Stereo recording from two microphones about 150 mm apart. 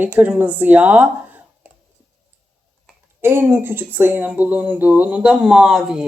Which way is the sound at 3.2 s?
15° right (ahead or behind).